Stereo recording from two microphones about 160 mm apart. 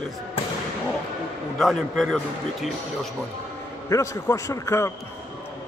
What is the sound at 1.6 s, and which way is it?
A man's voice, centre (ahead or behind).